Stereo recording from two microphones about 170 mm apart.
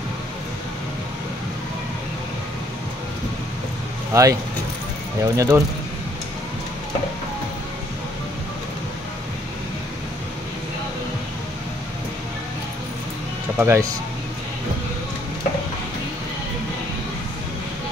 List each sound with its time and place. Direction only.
4.1 s speech: 20° right (ahead or behind)
13.6 s speech: 15° right (ahead or behind)